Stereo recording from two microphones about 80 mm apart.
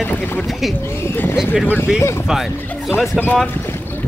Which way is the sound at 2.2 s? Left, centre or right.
Centre.